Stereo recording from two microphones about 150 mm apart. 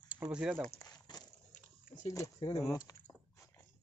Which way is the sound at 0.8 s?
25° left (ahead or behind).